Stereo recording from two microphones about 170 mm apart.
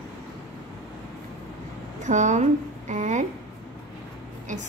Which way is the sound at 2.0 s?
45° right (ahead or behind).